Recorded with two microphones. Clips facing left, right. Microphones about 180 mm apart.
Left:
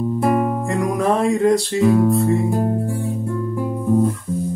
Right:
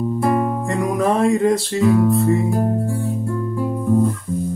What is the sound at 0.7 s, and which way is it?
Music, centre (ahead or behind).